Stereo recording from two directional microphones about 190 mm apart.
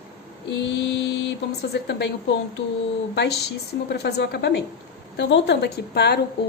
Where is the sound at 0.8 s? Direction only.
70° left (ahead or behind).